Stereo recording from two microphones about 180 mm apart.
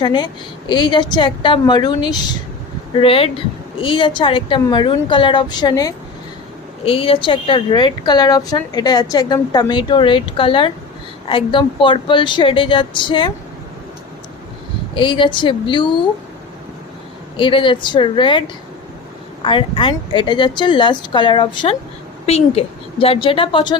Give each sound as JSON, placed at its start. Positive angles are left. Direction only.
{"t": 0.0, "sound": "speech", "side_deg": 25}
{"t": 6.8, "sound": "speech", "side_deg": 30}
{"t": 14.9, "sound": "speech", "side_deg": 25}
{"t": 17.3, "sound": "speech", "side_deg": 30}